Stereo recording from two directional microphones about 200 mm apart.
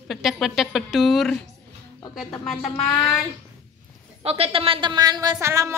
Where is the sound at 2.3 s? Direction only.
10° left (ahead or behind).